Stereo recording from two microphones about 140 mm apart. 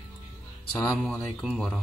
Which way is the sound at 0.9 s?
5° left (ahead or behind).